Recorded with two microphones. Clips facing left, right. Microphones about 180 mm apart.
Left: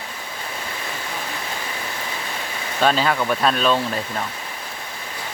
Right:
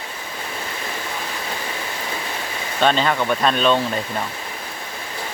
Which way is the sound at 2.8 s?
5° left (ahead or behind).